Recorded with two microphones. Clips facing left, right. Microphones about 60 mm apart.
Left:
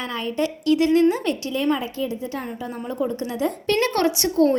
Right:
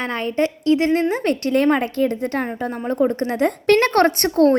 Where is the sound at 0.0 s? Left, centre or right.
Right.